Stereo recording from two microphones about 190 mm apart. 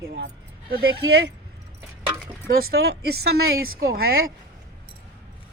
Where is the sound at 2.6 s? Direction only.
55° right (ahead or behind); by 3.8 s 75° right (ahead or behind).